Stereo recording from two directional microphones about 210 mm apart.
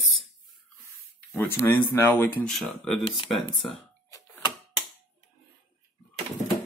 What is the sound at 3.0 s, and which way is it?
Speech, 25° left (ahead or behind).